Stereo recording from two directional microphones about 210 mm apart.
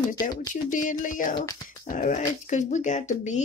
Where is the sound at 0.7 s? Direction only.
35° left (ahead or behind).